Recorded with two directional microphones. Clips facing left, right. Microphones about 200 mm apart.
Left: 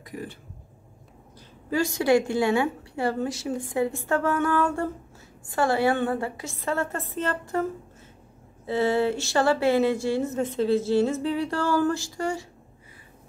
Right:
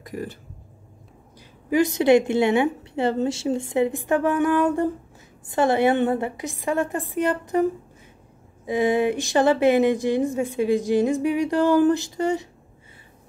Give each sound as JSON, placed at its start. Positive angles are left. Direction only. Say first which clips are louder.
{"t": 0.0, "sound": "speech", "louder": "right 4 dB", "side_deg": -45}
{"t": 1.7, "sound": "a woman's voice", "louder": "right 5 dB", "side_deg": -20}
{"t": 8.6, "sound": "speech", "louder": "right 2 dB", "side_deg": -15}